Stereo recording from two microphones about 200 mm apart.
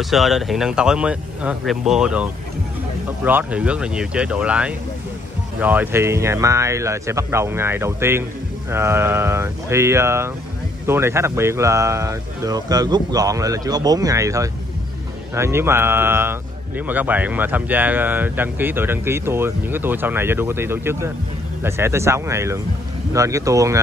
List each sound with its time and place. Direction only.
0.0 s speech: centre (ahead or behind)
3.3 s speech: 10° right (ahead or behind)